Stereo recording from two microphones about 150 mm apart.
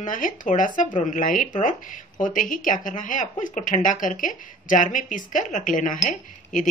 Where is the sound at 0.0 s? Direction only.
60° left (ahead or behind).